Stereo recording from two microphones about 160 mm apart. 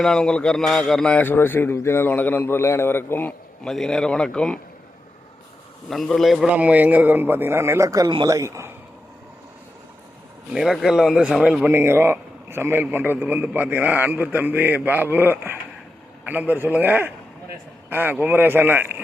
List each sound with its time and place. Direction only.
0.0 s a man's voice: 5° left (ahead or behind)
5.9 s a man's voice: centre (ahead or behind); by 8.7 s 15° right (ahead or behind)
10.5 s a man's voice: 5° right (ahead or behind)